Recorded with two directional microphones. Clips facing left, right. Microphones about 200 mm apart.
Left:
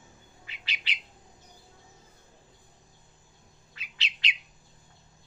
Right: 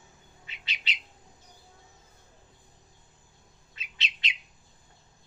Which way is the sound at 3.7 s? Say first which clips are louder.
Right 1 dB; 20° right (ahead or behind).